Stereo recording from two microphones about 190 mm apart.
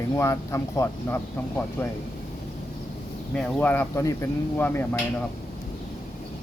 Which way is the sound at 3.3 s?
10° left (ahead or behind).